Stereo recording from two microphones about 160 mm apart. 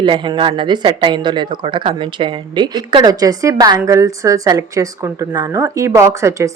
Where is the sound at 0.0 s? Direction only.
30° right (ahead or behind).